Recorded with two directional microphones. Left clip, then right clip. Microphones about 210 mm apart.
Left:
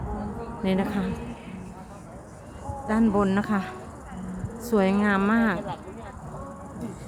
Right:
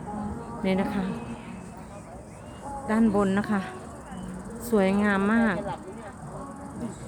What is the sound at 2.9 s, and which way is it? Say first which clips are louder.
Speech: left 1 dB; 5° left (ahead or behind).